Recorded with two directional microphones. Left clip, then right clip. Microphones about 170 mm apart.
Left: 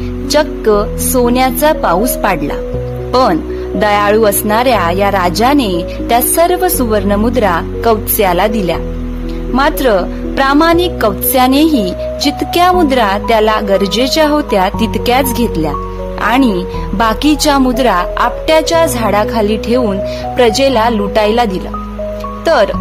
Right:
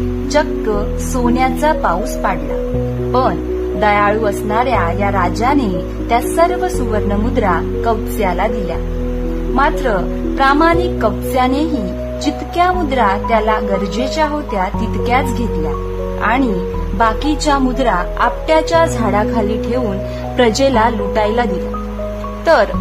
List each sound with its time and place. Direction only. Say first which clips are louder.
0.3 s speech: left 5 dB; 50° left (ahead or behind)
9.6 s speech: left 4 dB; 50° left (ahead or behind)
12.5 s speech: left 5 dB; 50° left (ahead or behind)
16.2 s speech: left 4 dB; 55° left (ahead or behind); by 22.7 s 35° left (ahead or behind)